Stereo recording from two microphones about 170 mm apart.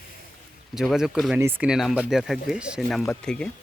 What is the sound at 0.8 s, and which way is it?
Speech, centre (ahead or behind).